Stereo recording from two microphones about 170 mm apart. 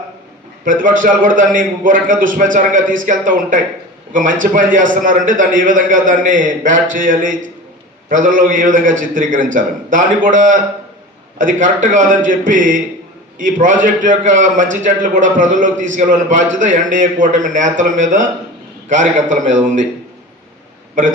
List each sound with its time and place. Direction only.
0.6 s a man's voice: 50° right (ahead or behind)